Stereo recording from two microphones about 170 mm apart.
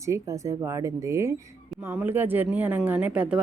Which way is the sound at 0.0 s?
20° right (ahead or behind).